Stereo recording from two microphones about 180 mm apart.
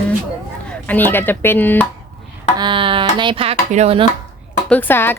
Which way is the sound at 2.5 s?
25° right (ahead or behind).